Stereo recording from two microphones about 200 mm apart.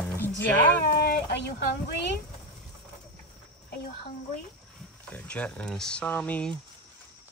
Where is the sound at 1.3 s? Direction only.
60° left (ahead or behind).